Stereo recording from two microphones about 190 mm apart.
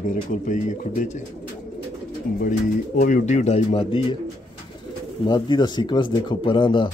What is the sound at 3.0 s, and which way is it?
Speech, 40° left (ahead or behind).